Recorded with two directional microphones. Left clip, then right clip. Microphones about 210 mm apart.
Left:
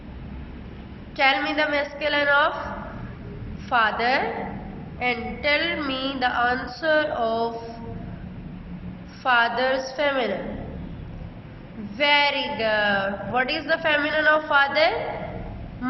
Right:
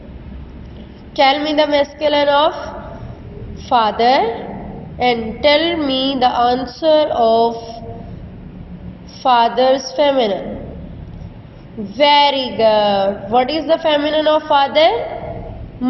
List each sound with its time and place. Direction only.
1.1 s a woman's voice: 20° right (ahead or behind)
3.7 s a woman's voice: 20° right (ahead or behind)
9.2 s a woman's voice: 20° right (ahead or behind)
11.9 s a woman's voice: 15° right (ahead or behind)